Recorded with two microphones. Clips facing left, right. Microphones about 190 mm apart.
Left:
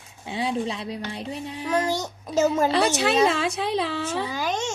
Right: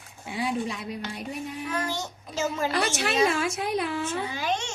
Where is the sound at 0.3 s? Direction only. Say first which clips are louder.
Left 2 dB; 25° left (ahead or behind).